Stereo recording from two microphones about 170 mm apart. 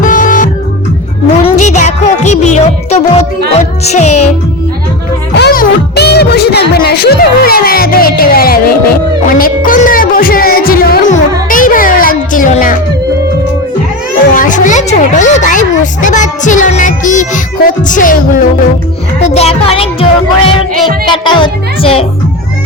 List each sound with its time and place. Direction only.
0.0 s music: 50° left (ahead or behind)
1.5 s a sound: 45° left (ahead or behind)
2.3 s speech: 40° left (ahead or behind)
5.3 s speech: 80° left; by 12.7 s 50° left (ahead or behind)
14.3 s speech: 50° left (ahead or behind)
19.3 s speech: 35° left (ahead or behind)